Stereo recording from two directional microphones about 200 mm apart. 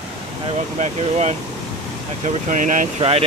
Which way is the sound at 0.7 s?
35° right (ahead or behind).